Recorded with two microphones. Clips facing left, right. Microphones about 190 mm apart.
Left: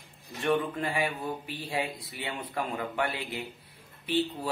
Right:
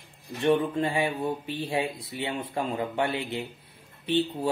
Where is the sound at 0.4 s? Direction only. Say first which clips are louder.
Right 4 dB; 25° right (ahead or behind).